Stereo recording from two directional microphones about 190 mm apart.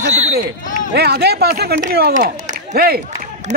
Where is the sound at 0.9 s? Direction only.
60° right (ahead or behind).